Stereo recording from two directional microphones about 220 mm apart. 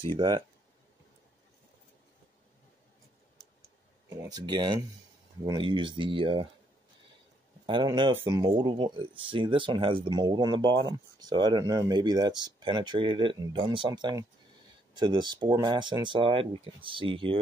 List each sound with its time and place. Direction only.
0.0 s speech: 20° right (ahead or behind)
4.1 s speech: 15° right (ahead or behind)
7.6 s speech: 20° right (ahead or behind)